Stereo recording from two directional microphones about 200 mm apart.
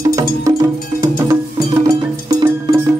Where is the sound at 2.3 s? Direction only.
20° right (ahead or behind).